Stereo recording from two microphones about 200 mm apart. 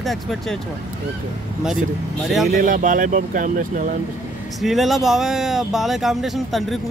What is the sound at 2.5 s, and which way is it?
Speech, 40° right (ahead or behind).